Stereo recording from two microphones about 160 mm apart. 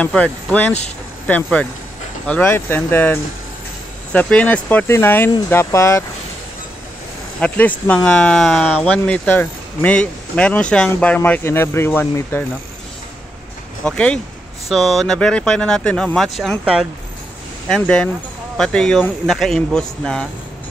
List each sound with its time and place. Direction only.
0.0 s speech: 10° left (ahead or behind)
7.3 s speech: 10° left (ahead or behind)
13.8 s speech: 5° left (ahead or behind)